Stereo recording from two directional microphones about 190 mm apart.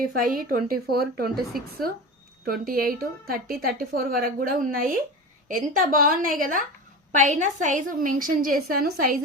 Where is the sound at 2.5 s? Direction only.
50° right (ahead or behind).